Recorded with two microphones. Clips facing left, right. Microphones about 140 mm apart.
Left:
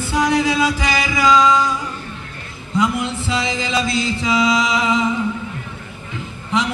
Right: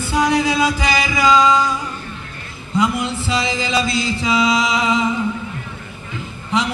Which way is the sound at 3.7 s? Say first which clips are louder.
Even; 10° right (ahead or behind).